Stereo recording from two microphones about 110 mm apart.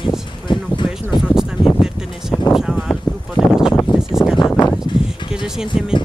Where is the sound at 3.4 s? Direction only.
10° left (ahead or behind).